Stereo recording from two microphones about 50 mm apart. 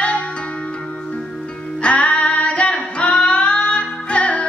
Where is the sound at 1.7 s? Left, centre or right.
Left.